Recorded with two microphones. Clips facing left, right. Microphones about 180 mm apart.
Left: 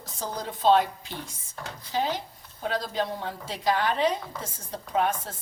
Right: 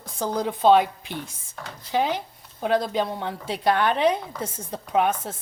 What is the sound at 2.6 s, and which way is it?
A woman's voice, 60° right (ahead or behind).